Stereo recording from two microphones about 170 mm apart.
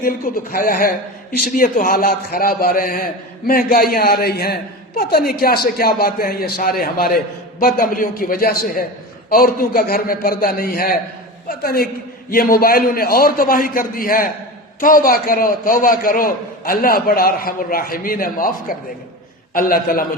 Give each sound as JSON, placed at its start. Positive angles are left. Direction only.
{"t": 0.0, "sound": "a man's voice", "side_deg": 60}
{"t": 19.5, "sound": "a man's voice", "side_deg": 60}